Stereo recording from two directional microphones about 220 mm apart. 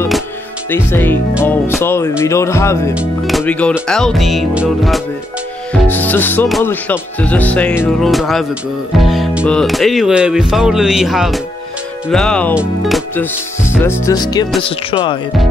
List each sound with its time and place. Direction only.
0.7 s speech: 10° left (ahead or behind)
2.9 s speech: 5° right (ahead or behind)
12.5 s music: centre (ahead or behind); by 14.5 s 20° left (ahead or behind)
14.6 s speech: 25° left (ahead or behind)